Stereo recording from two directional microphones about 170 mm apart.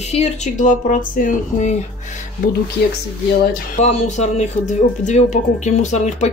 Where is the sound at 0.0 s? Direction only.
40° left (ahead or behind).